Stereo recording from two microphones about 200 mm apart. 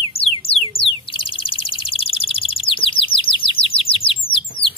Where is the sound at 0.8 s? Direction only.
25° left (ahead or behind).